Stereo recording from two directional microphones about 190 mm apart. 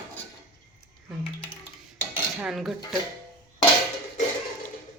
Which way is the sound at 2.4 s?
Centre (ahead or behind).